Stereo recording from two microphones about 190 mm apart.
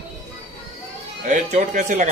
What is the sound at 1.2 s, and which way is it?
Speech, 40° right (ahead or behind).